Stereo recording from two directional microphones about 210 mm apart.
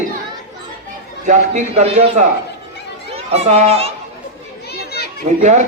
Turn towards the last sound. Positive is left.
turn(degrees=-35)  # may be behind; listen again after turning